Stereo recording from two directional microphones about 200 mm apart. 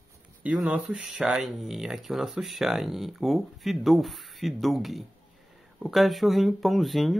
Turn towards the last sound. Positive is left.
turn(degrees=0)  # may be behind; listen again after turning